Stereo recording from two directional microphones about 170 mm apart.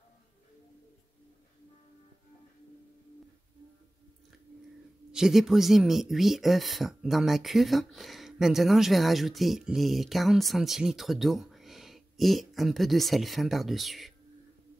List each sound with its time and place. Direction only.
5.1 s speech: 5° right (ahead or behind)